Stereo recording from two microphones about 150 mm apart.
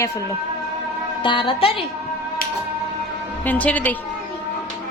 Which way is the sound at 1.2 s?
35° left (ahead or behind).